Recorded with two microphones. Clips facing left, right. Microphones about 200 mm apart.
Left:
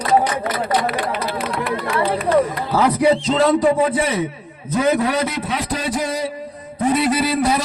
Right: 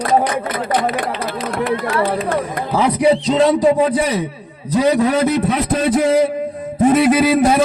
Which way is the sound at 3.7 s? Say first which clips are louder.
Right 2 dB; 40° right (ahead or behind).